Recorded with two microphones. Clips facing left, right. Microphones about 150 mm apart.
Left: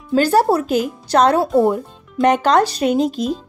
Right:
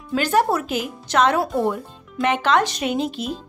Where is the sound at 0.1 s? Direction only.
35° left (ahead or behind).